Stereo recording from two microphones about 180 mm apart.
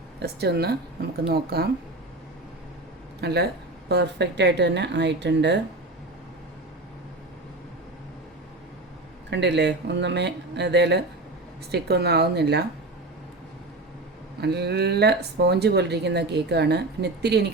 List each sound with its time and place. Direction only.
0.2 s speech: 65° right (ahead or behind)
3.2 s speech: 65° right (ahead or behind)
9.3 s speech: 75° right (ahead or behind)
14.4 s speech: 65° right (ahead or behind)